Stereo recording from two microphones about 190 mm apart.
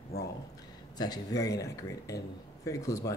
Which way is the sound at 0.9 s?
20° left (ahead or behind).